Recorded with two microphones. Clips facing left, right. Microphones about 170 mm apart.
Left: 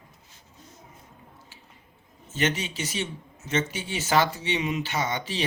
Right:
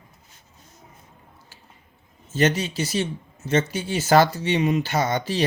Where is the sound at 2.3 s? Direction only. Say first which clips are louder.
Right 6 dB; 40° right (ahead or behind).